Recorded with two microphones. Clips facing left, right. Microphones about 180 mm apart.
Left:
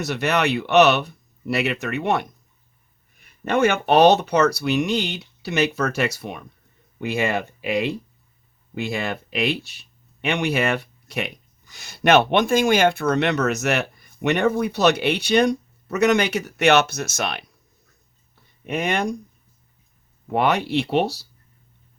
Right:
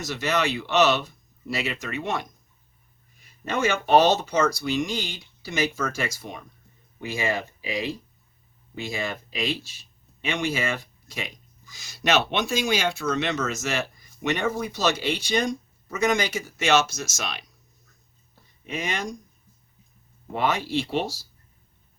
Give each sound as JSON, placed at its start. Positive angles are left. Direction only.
{"t": 0.0, "sound": "speech", "side_deg": 65}
{"t": 18.6, "sound": "speech", "side_deg": 60}
{"t": 20.3, "sound": "speech", "side_deg": 65}